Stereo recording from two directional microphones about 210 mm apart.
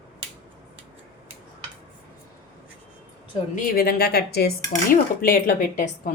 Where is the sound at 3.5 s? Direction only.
40° left (ahead or behind).